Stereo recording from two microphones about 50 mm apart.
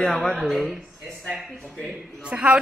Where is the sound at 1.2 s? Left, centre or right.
Centre.